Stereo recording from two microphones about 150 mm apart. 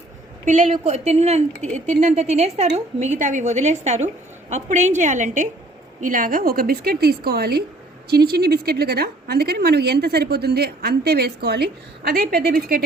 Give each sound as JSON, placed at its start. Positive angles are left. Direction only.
{"t": 0.4, "sound": "a woman's voice", "side_deg": -50}